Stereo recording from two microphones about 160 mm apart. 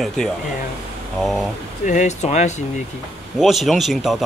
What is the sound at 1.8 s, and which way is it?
Speech, 50° left (ahead or behind).